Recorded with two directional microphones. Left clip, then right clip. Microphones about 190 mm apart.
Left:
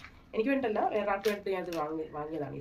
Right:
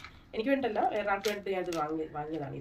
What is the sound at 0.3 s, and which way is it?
Speech, 10° left (ahead or behind).